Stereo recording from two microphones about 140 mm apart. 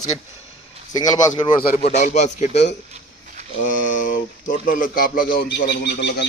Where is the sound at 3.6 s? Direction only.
70° left (ahead or behind).